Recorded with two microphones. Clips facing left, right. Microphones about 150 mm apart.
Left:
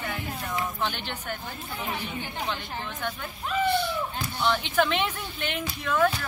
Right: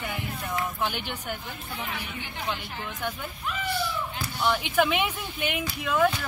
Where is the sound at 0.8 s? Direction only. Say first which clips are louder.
Right 1 dB; 10° right (ahead or behind).